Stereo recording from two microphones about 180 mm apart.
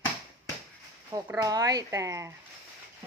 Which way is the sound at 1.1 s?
20° right (ahead or behind).